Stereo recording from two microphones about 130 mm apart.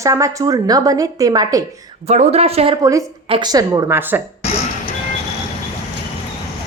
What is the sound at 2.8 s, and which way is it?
A woman's voice, 25° right (ahead or behind).